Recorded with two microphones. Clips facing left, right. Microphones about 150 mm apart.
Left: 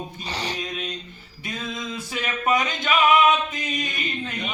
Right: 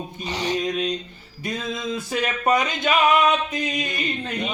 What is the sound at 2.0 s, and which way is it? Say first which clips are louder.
Speech: right 4 dB; 35° right (ahead or behind).